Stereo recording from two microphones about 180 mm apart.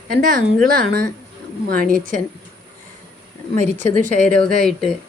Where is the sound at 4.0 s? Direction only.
45° right (ahead or behind).